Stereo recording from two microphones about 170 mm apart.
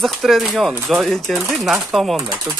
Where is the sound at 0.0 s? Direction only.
Centre (ahead or behind).